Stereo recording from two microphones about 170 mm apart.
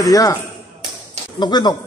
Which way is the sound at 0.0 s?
20° left (ahead or behind).